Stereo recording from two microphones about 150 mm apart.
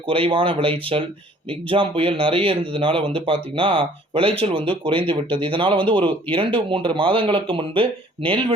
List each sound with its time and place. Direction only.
0.1 s speech: 35° right (ahead or behind)